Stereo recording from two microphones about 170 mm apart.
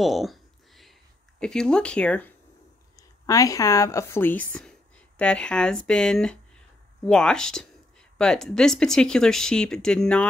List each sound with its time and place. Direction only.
0.0 s a sound: centre (ahead or behind)
1.4 s speech: 5° left (ahead or behind)
3.0 s speech: 20° left (ahead or behind)